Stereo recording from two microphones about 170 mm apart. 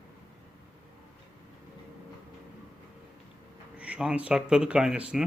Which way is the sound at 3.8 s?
5° right (ahead or behind).